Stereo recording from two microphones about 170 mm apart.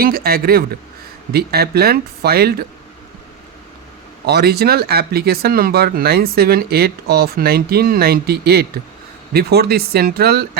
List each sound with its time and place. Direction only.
0.0 s speech: 60° right (ahead or behind)
4.3 s speech: 70° right (ahead or behind)